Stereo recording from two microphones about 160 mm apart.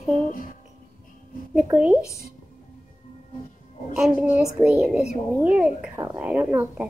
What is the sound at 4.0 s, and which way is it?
Speech, 5° right (ahead or behind).